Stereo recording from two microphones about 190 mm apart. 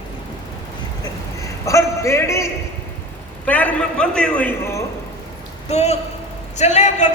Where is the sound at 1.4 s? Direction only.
15° left (ahead or behind).